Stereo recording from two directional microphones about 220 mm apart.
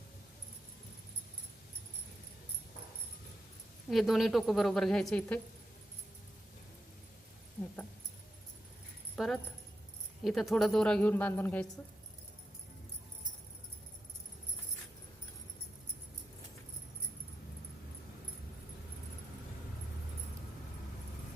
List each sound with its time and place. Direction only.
3.8 s a woman's voice: centre (ahead or behind)
9.1 s a woman's voice: centre (ahead or behind)